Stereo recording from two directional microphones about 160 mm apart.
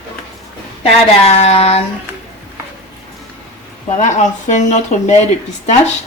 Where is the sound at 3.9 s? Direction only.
50° left (ahead or behind).